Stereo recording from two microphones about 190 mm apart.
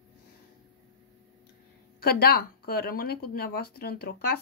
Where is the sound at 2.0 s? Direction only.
55° left (ahead or behind).